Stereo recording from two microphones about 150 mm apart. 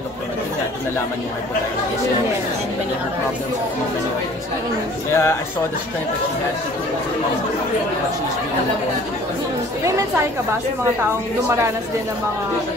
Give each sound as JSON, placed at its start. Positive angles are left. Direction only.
{"t": 5.1, "sound": "speech", "side_deg": 15}